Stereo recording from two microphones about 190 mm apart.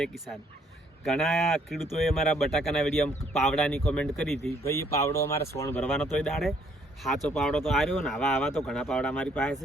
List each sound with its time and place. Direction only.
0.0 s speech: centre (ahead or behind)
4.6 s speech: 15° left (ahead or behind)